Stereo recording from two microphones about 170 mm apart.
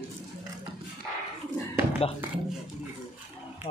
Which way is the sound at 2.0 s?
35° left (ahead or behind).